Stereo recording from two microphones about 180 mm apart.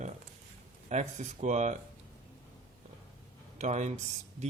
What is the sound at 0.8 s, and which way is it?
Speech, 40° right (ahead or behind).